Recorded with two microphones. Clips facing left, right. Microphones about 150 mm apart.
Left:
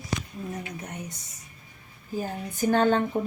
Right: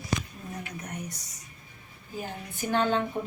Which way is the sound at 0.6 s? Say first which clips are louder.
Left 1 dB; 20° left (ahead or behind).